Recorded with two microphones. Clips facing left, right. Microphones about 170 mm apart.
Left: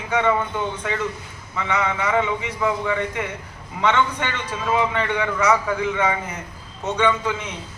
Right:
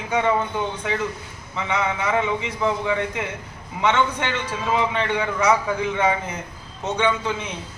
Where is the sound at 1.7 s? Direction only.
10° right (ahead or behind).